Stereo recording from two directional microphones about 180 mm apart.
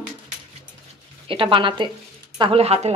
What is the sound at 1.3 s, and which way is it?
A woman's voice, 30° right (ahead or behind).